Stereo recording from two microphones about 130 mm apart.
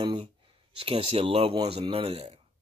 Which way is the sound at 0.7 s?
45° right (ahead or behind).